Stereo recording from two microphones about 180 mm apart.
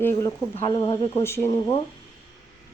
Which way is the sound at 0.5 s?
25° left (ahead or behind).